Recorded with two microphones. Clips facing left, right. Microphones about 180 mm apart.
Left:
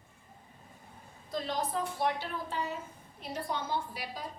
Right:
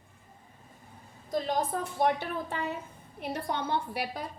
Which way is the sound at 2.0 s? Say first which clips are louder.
Right 9 dB; 55° right (ahead or behind).